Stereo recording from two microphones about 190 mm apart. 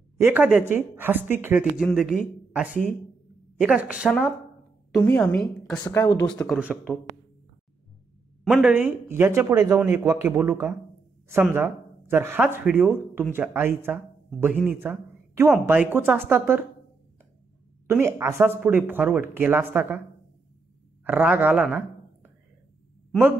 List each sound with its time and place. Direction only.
0.2 s a woman's voice: 10° right (ahead or behind)
5.9 s speech: 15° left (ahead or behind)
6.2 s a woman's voice: 5° left (ahead or behind)
6.6 s speech: 5° right (ahead or behind)
8.5 s speech: 5° right (ahead or behind)
17.8 s speech: 15° right (ahead or behind)
21.0 s speech: 10° right (ahead or behind)